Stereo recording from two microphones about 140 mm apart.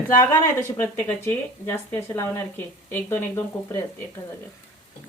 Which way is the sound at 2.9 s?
15° left (ahead or behind).